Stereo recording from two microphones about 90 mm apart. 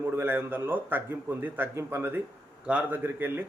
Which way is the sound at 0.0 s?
25° right (ahead or behind).